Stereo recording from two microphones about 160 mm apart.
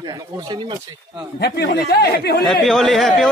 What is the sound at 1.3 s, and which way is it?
Speech, 90° left.